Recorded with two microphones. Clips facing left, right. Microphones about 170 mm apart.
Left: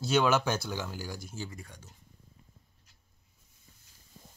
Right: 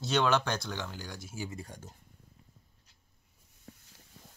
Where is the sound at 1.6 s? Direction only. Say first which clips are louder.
Right 5 dB; 45° right (ahead or behind).